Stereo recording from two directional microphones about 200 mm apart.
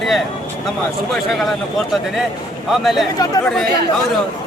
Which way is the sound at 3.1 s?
20° left (ahead or behind).